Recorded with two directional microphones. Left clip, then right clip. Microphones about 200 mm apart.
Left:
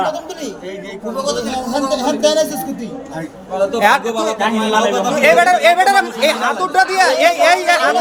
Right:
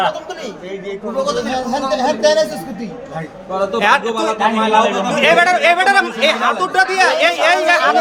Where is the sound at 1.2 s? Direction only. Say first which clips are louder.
Left 1 dB; 10° right (ahead or behind).